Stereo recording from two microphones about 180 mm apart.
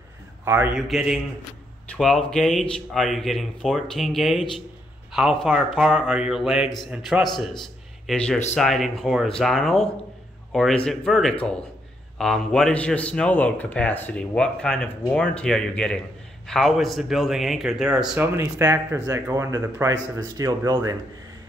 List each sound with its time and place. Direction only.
0.5 s a man's voice: 10° right (ahead or behind)
8.5 s speech: centre (ahead or behind); by 20.9 s 20° right (ahead or behind)